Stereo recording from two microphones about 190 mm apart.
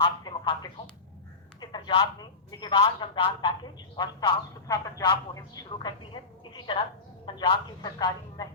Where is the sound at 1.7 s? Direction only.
25° left (ahead or behind).